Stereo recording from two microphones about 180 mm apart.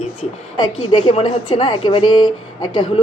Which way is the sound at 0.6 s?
25° left (ahead or behind).